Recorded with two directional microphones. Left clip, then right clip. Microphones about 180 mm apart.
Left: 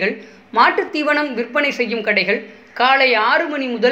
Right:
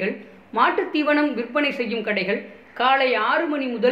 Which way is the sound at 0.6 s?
10° left (ahead or behind).